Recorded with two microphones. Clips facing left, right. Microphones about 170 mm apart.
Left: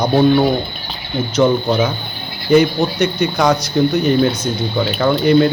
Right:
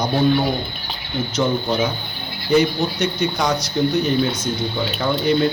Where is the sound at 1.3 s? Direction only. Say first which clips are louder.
Left 6 dB; 60° left (ahead or behind).